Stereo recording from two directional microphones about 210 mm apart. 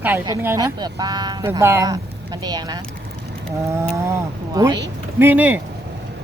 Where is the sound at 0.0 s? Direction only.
10° right (ahead or behind).